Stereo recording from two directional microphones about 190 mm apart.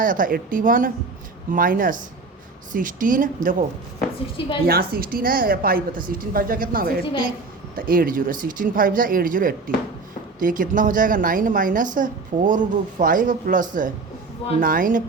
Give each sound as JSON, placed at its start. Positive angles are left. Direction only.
{"t": 0.0, "sound": "a woman's voice", "side_deg": -45}
{"t": 4.6, "sound": "a woman's voice", "side_deg": -55}
{"t": 7.0, "sound": "a woman's voice", "side_deg": 25}
{"t": 7.8, "sound": "a woman's voice", "side_deg": -50}